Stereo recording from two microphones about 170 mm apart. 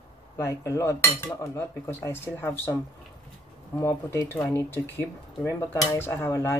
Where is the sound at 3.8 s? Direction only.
15° left (ahead or behind).